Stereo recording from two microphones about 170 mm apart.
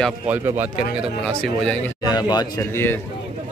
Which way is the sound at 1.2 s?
5° left (ahead or behind).